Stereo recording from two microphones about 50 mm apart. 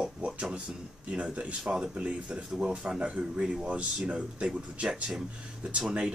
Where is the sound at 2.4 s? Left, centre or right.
Centre; by 4.9 s right.